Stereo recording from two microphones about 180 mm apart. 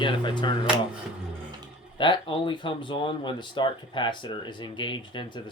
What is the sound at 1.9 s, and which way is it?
Speech, 25° left (ahead or behind).